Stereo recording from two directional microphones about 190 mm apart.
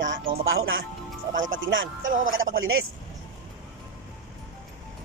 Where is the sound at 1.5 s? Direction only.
80° right.